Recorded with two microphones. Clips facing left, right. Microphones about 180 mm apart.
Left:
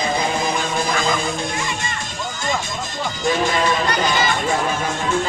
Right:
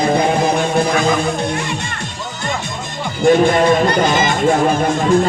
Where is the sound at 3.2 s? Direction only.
55° right (ahead or behind).